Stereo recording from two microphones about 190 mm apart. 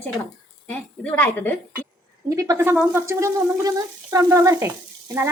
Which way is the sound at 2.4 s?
15° right (ahead or behind).